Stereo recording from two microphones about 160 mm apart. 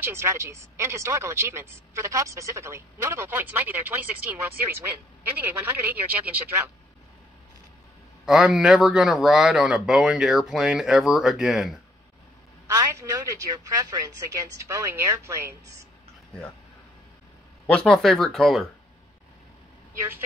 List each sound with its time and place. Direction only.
0.0 s speech: 15° right (ahead or behind)
8.3 s speech: centre (ahead or behind)
12.7 s a woman's voice: 20° right (ahead or behind)
17.6 s speech: 5° left (ahead or behind)